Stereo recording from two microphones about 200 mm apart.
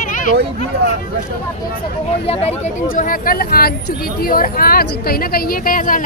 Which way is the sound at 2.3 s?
35° left (ahead or behind).